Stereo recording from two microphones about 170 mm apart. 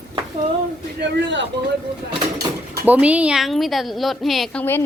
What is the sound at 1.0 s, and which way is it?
Speech, 90° right.